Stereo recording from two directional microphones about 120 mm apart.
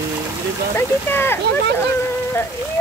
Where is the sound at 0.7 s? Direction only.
20° left (ahead or behind).